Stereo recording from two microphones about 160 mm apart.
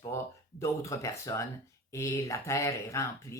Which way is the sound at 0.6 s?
20° left (ahead or behind).